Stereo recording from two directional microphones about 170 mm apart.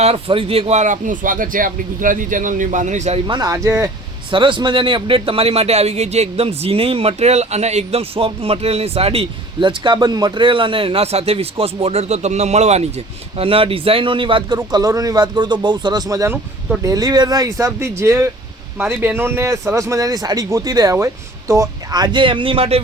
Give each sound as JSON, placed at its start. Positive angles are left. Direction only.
{"t": 0.0, "sound": "speech", "side_deg": -35}
{"t": 3.2, "sound": "a man's voice", "side_deg": -25}